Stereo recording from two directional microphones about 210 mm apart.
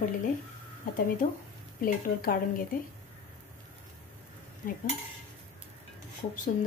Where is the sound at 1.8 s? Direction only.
40° left (ahead or behind).